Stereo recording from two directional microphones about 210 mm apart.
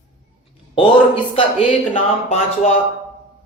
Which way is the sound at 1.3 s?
25° left (ahead or behind).